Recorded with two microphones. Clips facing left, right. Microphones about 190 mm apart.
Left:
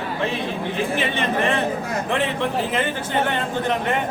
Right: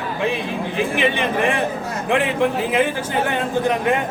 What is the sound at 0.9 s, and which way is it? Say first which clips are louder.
A man's voice: right 4 dB; 15° right (ahead or behind).